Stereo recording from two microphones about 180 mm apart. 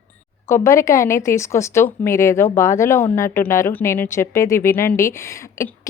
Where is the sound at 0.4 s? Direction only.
15° left (ahead or behind).